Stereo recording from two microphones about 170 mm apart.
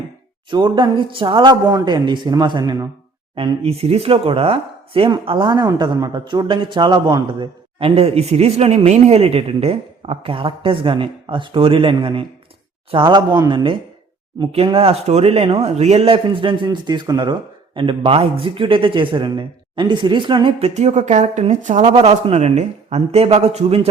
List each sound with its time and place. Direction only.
0.5 s speech: 30° right (ahead or behind)
3.3 s speech: 35° right (ahead or behind)